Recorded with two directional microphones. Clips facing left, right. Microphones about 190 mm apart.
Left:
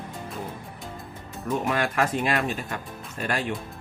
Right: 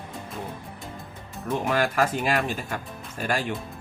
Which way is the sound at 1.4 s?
Centre (ahead or behind).